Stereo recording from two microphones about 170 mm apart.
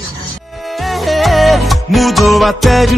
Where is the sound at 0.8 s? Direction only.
Centre (ahead or behind).